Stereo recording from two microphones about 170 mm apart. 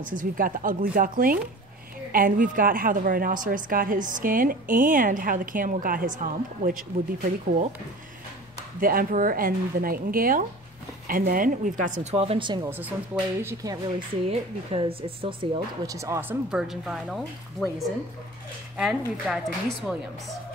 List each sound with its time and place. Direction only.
0.0 s a woman's voice: 50° right (ahead or behind)
8.7 s a woman's voice: 55° right (ahead or behind); by 12.6 s 30° right (ahead or behind)
12.6 s speech: 10° right (ahead or behind)
14.2 s speech: 35° right (ahead or behind)
15.9 s speech: 20° right (ahead or behind); by 20.0 s centre (ahead or behind)